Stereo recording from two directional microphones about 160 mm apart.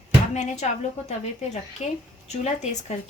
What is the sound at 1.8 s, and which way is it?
Speech, 40° left (ahead or behind).